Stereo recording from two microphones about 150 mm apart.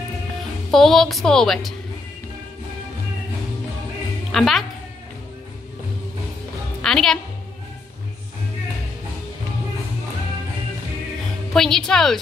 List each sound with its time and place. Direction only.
0.7 s a woman's voice: centre (ahead or behind)
4.3 s a woman's voice: centre (ahead or behind)
6.8 s a woman's voice: 5° left (ahead or behind)
11.5 s a woman's voice: 5° left (ahead or behind)